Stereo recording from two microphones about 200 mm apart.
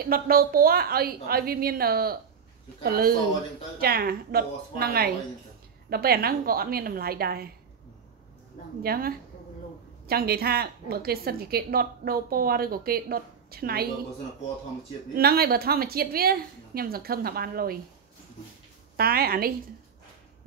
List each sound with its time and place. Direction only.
0.0 s a woman's voice: 45° right (ahead or behind)
8.8 s a woman's voice: 50° right (ahead or behind)
15.1 s a woman's voice: 50° right (ahead or behind)
18.9 s a woman's voice: 50° right (ahead or behind)